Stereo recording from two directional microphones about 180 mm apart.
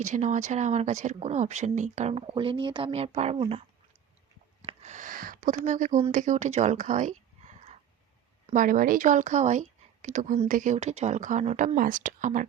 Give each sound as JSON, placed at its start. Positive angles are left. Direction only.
{"t": 0.0, "sound": "speech", "side_deg": -40}
{"t": 4.6, "sound": "a sound", "side_deg": -40}
{"t": 6.1, "sound": "speech", "side_deg": -45}